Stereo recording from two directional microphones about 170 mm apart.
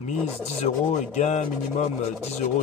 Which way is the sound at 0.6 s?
45° left (ahead or behind).